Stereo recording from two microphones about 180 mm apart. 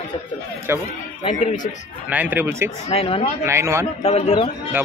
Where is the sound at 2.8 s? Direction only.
35° left (ahead or behind).